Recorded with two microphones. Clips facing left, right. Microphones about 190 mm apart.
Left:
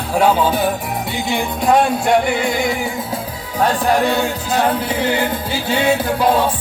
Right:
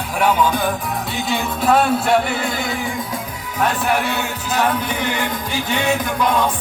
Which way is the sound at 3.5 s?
35° left (ahead or behind).